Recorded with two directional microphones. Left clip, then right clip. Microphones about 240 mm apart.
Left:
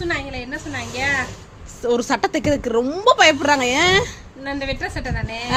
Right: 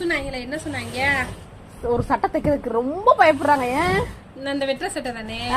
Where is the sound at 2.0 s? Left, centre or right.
Left.